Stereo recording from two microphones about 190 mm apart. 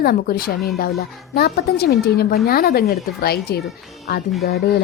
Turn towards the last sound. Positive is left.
turn(degrees=55)  # may be behind; listen again after turning